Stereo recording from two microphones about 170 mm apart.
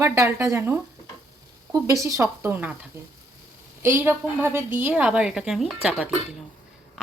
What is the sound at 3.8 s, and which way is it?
A woman's voice, 15° right (ahead or behind).